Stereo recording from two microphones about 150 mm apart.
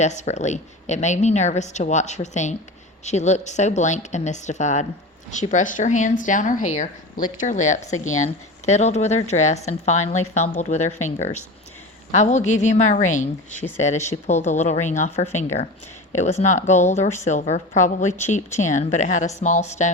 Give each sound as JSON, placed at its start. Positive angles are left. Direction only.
{"t": 0.0, "sound": "speech", "side_deg": 50}